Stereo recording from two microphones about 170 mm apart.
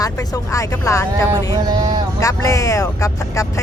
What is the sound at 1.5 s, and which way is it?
Speech, 25° right (ahead or behind).